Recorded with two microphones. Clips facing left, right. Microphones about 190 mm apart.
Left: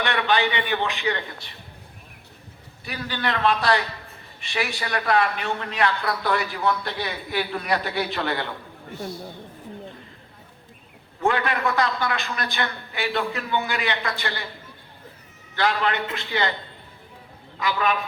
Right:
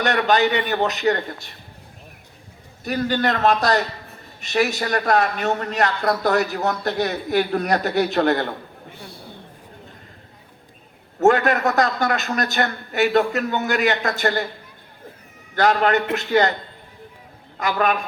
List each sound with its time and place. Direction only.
0.0 s a man's voice: 45° right (ahead or behind)
2.8 s a man's voice: 45° right (ahead or behind)
11.2 s a man's voice: 45° right (ahead or behind)
15.5 s a man's voice: 45° right (ahead or behind)
17.6 s a man's voice: 45° right (ahead or behind)